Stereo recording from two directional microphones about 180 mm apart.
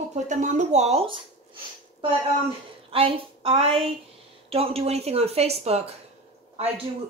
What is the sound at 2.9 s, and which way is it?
Speech, 30° right (ahead or behind).